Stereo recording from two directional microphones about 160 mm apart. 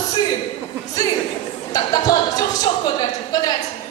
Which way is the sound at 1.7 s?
25° left (ahead or behind).